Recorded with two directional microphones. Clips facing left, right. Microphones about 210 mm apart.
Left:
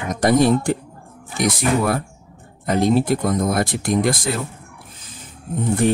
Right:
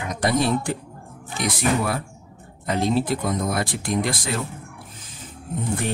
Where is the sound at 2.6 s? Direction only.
45° left (ahead or behind).